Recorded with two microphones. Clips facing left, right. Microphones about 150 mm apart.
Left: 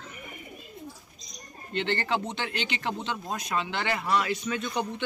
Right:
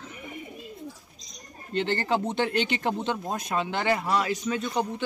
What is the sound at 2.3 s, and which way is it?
Speech, 50° right (ahead or behind).